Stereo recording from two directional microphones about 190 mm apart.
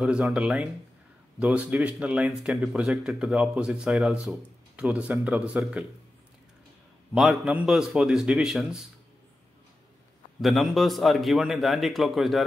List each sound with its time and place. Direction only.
0.0 s speech: 5° right (ahead or behind)
7.2 s speech: centre (ahead or behind)
10.4 s speech: centre (ahead or behind)